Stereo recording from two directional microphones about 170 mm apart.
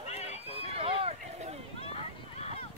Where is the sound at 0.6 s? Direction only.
35° right (ahead or behind).